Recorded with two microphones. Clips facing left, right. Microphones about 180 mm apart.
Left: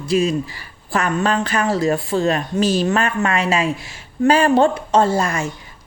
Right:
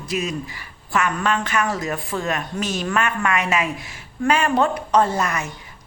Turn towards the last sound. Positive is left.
turn(degrees=30)  # may be behind; listen again after turning